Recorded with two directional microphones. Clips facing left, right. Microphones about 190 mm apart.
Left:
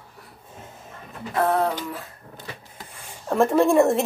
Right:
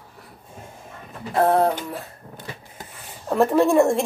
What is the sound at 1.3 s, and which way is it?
Music, 35° right (ahead or behind).